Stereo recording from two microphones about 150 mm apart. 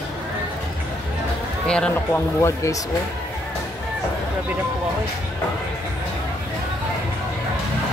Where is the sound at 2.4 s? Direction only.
20° left (ahead or behind).